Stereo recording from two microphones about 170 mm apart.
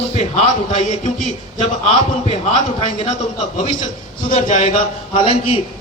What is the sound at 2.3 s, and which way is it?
Speech, 40° left (ahead or behind).